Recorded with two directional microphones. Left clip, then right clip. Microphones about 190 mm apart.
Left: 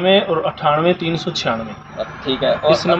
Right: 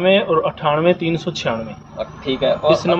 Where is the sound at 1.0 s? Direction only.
35° right (ahead or behind).